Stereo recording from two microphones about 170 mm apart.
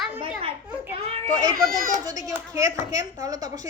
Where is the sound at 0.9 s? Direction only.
35° right (ahead or behind).